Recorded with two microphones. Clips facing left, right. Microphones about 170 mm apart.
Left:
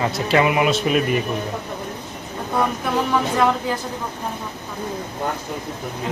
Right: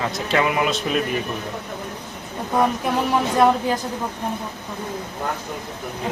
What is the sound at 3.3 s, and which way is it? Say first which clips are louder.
Speech: right 5 dB; 15° right (ahead or behind).